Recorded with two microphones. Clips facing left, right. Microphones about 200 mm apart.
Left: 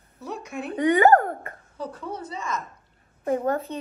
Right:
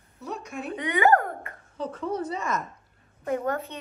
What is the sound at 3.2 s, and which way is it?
Speech, 30° left (ahead or behind).